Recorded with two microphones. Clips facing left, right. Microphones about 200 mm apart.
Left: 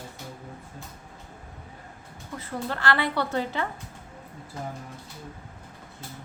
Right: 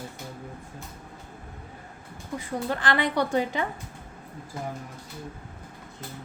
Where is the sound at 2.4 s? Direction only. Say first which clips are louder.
Right 1 dB; 15° right (ahead or behind).